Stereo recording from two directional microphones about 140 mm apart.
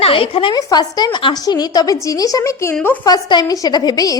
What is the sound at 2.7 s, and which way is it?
Speech, 10° left (ahead or behind).